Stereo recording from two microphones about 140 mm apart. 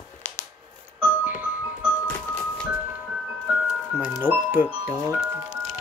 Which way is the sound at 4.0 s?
10° right (ahead or behind).